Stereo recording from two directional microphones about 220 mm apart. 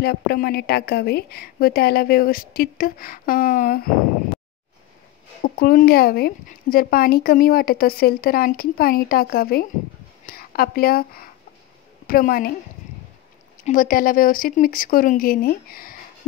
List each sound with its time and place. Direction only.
0.0 s speech: 45° left (ahead or behind)
5.4 s a woman's voice: 40° left (ahead or behind)
13.7 s speech: 40° left (ahead or behind)